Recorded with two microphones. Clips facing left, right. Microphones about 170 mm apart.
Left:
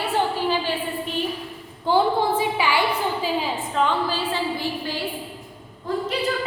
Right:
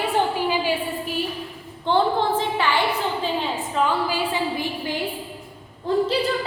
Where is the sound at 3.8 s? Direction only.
10° right (ahead or behind).